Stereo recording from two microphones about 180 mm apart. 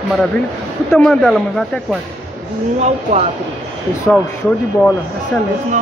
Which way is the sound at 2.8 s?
40° right (ahead or behind).